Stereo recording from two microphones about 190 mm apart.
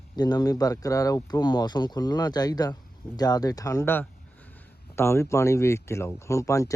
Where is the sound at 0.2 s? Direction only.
20° left (ahead or behind).